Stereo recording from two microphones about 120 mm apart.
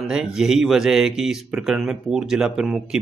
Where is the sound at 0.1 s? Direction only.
5° right (ahead or behind).